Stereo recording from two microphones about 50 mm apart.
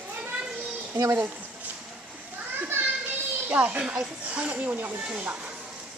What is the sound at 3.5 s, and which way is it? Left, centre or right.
Speech, right.